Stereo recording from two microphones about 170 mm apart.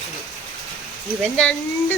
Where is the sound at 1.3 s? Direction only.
5° left (ahead or behind).